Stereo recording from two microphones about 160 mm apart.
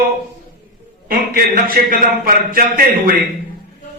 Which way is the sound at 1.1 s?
65° right (ahead or behind).